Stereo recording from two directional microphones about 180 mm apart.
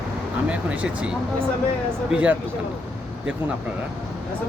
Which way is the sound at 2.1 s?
10° right (ahead or behind).